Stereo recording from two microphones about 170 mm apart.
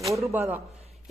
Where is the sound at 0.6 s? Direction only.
40° right (ahead or behind).